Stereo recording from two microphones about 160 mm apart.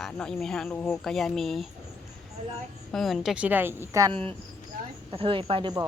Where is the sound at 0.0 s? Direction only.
5° left (ahead or behind).